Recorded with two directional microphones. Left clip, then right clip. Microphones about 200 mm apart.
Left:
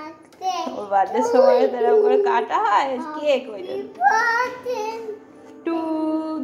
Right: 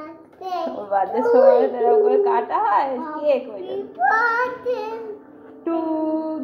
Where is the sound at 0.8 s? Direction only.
15° left (ahead or behind).